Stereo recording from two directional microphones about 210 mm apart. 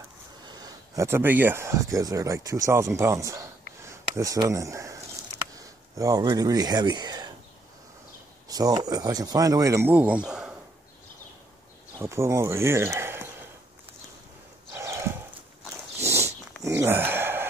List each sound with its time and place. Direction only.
0.5 s speech: 15° right (ahead or behind)
5.9 s speech: 15° right (ahead or behind)
8.5 s speech: 20° right (ahead or behind)
12.0 s speech: 15° right (ahead or behind)
14.7 s horse: 15° right (ahead or behind)
16.6 s a sound: 10° right (ahead or behind)